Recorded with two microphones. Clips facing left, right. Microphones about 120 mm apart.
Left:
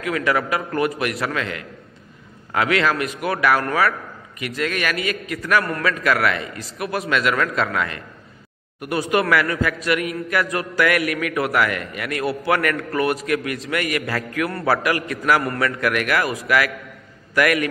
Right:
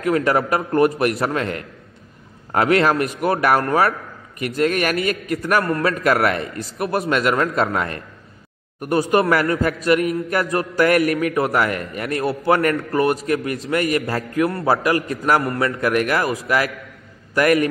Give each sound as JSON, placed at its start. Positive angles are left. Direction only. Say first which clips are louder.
{"t": 0.0, "sound": "a man's voice", "louder": "right 3 dB", "side_deg": -40}
{"t": 4.4, "sound": "a man's voice", "louder": "right 5 dB", "side_deg": -40}
{"t": 5.6, "sound": "a man's voice", "louder": "right 3 dB", "side_deg": -30}
{"t": 6.6, "sound": "a man's voice", "louder": "right 4 dB", "side_deg": -30}